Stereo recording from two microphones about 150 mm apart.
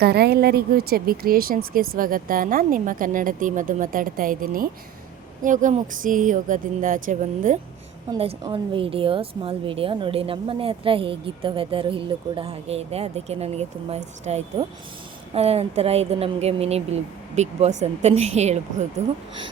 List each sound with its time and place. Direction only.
0.0 s a woman's voice: 90° right; by 7.6 s 55° right (ahead or behind)
8.4 s a woman's voice: 35° right (ahead or behind)